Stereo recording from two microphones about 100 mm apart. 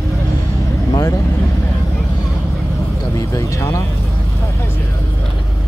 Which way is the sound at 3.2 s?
35° left (ahead or behind).